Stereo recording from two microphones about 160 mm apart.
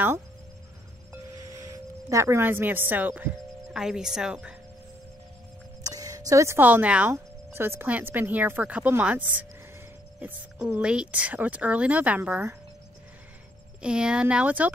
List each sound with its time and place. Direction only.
1.4 s speech: 20° right (ahead or behind)
5.9 s speech: 20° right (ahead or behind)
13.8 s speech: 5° right (ahead or behind)